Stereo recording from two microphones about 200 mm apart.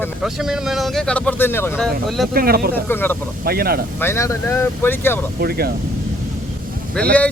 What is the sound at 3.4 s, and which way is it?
Speech, 50° right (ahead or behind).